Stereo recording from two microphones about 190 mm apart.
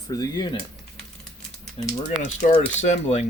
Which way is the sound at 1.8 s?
25° left (ahead or behind).